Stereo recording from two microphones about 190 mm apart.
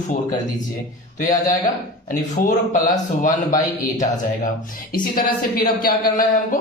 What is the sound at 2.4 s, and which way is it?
Speech, 45° left (ahead or behind).